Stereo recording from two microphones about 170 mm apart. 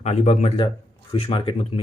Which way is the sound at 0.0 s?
40° left (ahead or behind).